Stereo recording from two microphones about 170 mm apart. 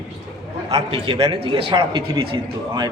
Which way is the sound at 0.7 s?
35° right (ahead or behind).